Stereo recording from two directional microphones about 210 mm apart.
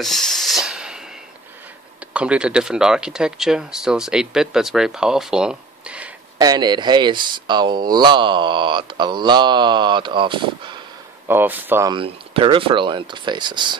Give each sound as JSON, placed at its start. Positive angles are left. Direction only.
{"t": 0.0, "sound": "a sound", "side_deg": 0}
{"t": 2.1, "sound": "speech", "side_deg": -5}
{"t": 6.3, "sound": "speech", "side_deg": -20}
{"t": 11.2, "sound": "speech", "side_deg": -10}
{"t": 11.9, "sound": "speech", "side_deg": -25}